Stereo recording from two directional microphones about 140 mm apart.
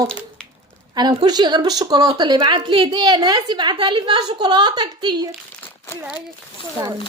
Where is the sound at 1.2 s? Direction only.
30° right (ahead or behind).